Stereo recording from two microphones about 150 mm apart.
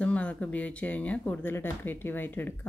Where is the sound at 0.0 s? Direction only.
10° left (ahead or behind).